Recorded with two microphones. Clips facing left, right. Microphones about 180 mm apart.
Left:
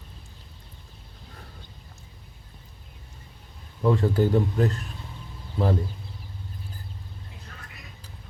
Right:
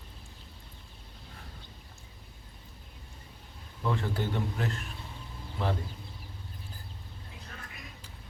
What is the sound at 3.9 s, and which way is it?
Speech, 40° left (ahead or behind).